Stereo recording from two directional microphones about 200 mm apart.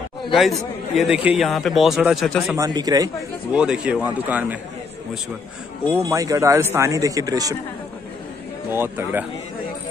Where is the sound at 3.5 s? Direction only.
5° right (ahead or behind).